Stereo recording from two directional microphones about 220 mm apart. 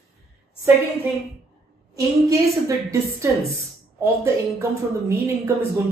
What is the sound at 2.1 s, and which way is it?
Speech, 15° right (ahead or behind).